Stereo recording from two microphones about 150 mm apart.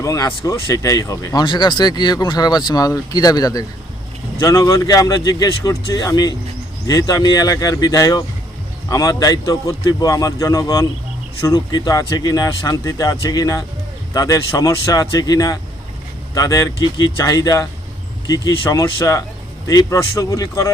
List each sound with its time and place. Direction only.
0.0 s speech: 20° left (ahead or behind)
18.7 s speech: 20° left (ahead or behind)